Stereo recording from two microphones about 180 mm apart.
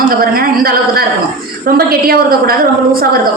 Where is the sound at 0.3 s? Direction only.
55° right (ahead or behind).